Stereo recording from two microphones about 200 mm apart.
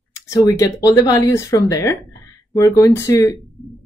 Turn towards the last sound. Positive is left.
turn(degrees=15)  # may be behind; listen again after turning